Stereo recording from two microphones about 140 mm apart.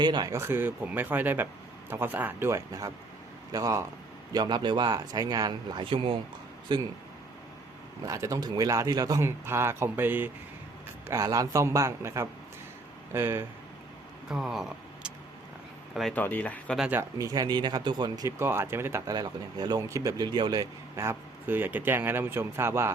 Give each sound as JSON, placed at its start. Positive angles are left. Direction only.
{"t": 0.0, "sound": "speech", "side_deg": -30}
{"t": 8.0, "sound": "speech", "side_deg": -25}
{"t": 11.1, "sound": "speech", "side_deg": -25}
{"t": 14.3, "sound": "vehicle", "side_deg": -5}
{"t": 16.1, "sound": "speech", "side_deg": 10}
{"t": 16.7, "sound": "speech", "side_deg": -5}
{"t": 17.0, "sound": "speech", "side_deg": -25}